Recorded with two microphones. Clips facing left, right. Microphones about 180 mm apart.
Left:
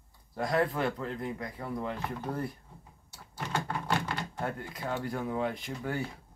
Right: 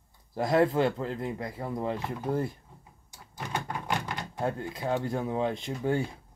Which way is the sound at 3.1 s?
15° right (ahead or behind).